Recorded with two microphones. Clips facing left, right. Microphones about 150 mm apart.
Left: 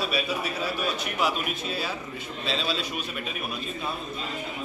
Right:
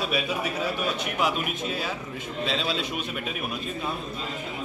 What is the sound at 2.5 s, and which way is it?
Speech, 20° right (ahead or behind).